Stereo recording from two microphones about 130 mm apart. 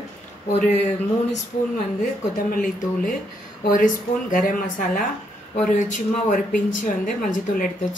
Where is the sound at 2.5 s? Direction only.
90° left.